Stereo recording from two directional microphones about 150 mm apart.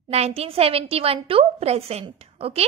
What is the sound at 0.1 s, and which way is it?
A woman's voice, 45° right (ahead or behind).